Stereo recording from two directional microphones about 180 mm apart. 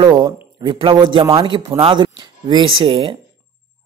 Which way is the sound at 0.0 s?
25° right (ahead or behind).